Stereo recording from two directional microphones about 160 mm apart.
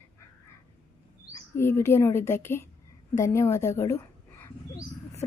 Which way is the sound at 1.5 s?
15° left (ahead or behind).